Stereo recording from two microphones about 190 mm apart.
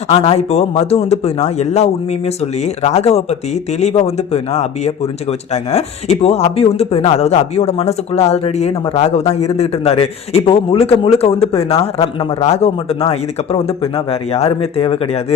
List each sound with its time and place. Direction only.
0.1 s a man's voice: 30° left (ahead or behind)